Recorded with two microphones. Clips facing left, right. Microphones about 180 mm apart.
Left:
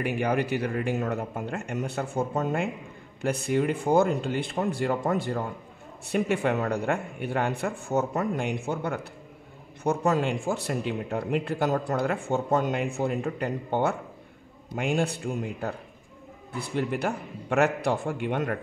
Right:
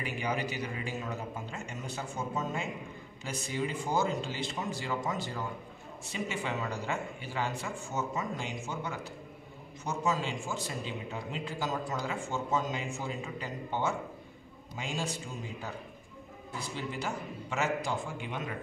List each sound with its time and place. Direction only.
0.0 s a man's voice: 60° left (ahead or behind)